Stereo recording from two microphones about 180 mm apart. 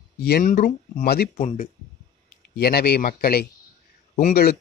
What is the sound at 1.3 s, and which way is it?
Speech, 45° left (ahead or behind).